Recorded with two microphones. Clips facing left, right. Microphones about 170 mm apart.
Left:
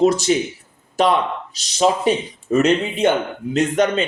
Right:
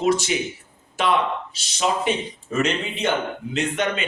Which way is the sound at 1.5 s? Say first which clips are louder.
Left 8 dB; 40° left (ahead or behind).